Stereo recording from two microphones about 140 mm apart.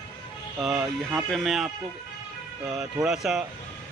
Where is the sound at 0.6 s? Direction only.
5° right (ahead or behind).